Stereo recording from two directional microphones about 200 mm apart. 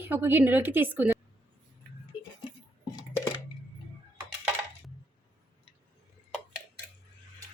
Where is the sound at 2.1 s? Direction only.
25° left (ahead or behind).